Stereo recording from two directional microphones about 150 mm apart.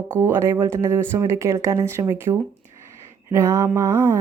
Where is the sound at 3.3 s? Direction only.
25° right (ahead or behind).